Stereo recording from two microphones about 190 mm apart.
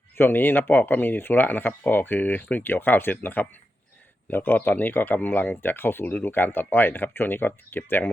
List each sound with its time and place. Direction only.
0.2 s speech: 10° left (ahead or behind)